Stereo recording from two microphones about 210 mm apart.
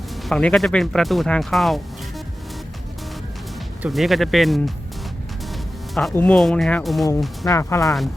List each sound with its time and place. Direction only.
0.3 s speech: centre (ahead or behind)
3.8 s speech: centre (ahead or behind)
5.9 s speech: centre (ahead or behind)
7.4 s speech: 15° left (ahead or behind)